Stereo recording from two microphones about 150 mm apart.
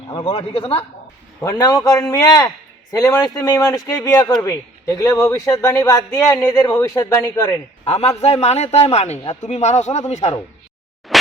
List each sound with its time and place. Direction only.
0.1 s a man's voice: 30° left (ahead or behind)
1.5 s speech: 25° left (ahead or behind)
7.9 s a man's voice: 45° left (ahead or behind)
11.1 s a sound: centre (ahead or behind)